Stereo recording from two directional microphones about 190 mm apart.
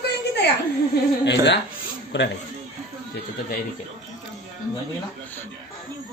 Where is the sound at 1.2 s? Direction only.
65° left (ahead or behind).